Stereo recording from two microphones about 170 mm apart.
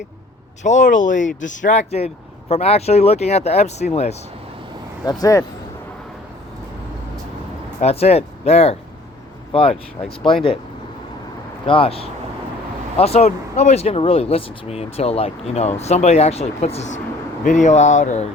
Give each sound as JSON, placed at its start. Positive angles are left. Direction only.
{"t": 0.6, "sound": "speech", "side_deg": 45}
{"t": 5.0, "sound": "speech", "side_deg": 20}
{"t": 7.8, "sound": "speech", "side_deg": 40}
{"t": 11.6, "sound": "speech", "side_deg": 30}